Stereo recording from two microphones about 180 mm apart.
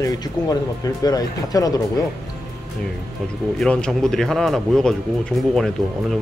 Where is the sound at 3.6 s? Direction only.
5° left (ahead or behind).